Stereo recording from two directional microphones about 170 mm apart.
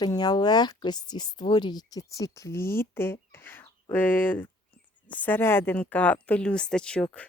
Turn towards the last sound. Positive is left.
turn(degrees=5)  # may be behind; listen again after turning